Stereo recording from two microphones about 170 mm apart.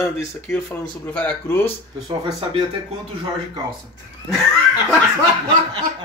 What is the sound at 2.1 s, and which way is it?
Speech, 25° right (ahead or behind).